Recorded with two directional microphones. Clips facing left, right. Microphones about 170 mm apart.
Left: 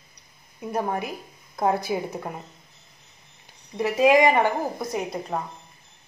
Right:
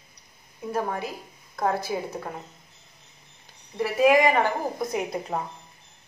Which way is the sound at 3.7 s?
20° left (ahead or behind).